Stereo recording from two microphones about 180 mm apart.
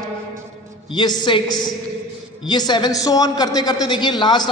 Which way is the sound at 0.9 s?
25° left (ahead or behind).